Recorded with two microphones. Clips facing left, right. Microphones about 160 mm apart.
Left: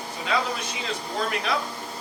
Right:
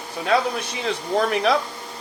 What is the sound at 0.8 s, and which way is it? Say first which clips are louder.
Speech: right 8 dB; 70° right (ahead or behind).